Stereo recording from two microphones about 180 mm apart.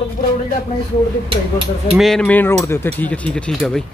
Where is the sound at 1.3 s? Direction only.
30° right (ahead or behind).